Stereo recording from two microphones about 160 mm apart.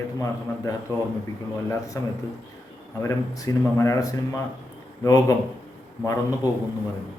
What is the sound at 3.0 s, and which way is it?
A man's voice, 20° left (ahead or behind).